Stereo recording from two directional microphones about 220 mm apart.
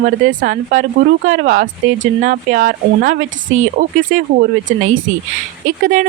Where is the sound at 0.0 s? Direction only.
35° right (ahead or behind).